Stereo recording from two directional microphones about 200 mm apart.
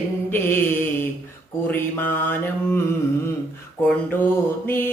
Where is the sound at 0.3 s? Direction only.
10° left (ahead or behind).